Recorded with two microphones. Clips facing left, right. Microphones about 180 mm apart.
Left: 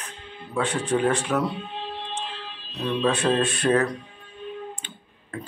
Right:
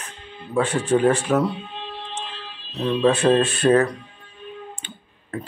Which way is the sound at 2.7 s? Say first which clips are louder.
Right 4 dB; 25° right (ahead or behind).